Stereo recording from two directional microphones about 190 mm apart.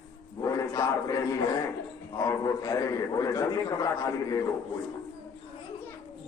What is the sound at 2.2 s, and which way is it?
A man's voice, 15° left (ahead or behind).